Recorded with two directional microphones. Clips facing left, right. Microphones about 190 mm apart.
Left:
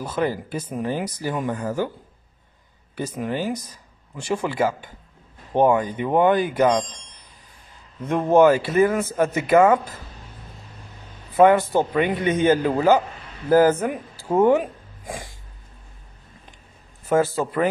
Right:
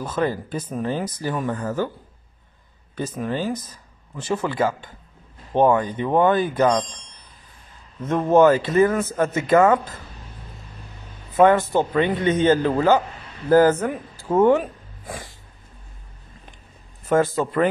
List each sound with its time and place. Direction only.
0.0 s speech: 10° left (ahead or behind)
3.2 s speech: 15° left (ahead or behind)
8.0 s speech: 15° left (ahead or behind)
11.3 s speech: 10° left (ahead or behind)
17.4 s speech: 5° left (ahead or behind)